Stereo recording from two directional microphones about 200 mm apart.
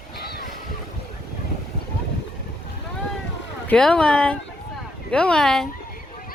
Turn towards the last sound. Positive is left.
turn(degrees=0)  # may be behind; listen again after turning